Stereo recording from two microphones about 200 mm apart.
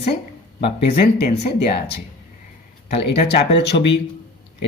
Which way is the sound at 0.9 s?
50° left (ahead or behind).